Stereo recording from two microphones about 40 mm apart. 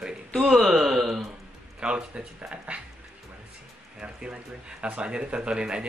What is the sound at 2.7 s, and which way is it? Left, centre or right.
Speech, right.